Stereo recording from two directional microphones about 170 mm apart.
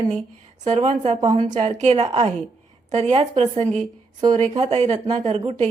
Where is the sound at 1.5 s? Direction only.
40° right (ahead or behind).